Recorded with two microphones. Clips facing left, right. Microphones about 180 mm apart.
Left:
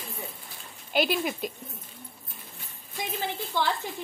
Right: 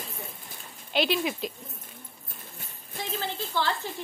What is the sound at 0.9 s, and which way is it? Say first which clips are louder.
Speech: even; centre (ahead or behind).